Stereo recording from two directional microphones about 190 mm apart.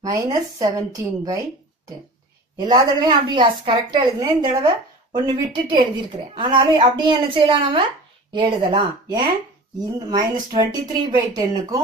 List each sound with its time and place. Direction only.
0.0 s a woman's voice: 20° right (ahead or behind)
2.6 s a woman's voice: 20° right (ahead or behind)